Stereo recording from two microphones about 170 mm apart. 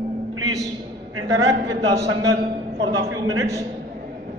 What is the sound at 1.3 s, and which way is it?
Speech, 20° right (ahead or behind).